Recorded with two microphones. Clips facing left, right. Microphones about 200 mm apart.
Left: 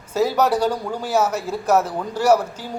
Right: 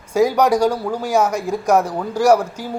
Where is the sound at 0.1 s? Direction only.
15° right (ahead or behind).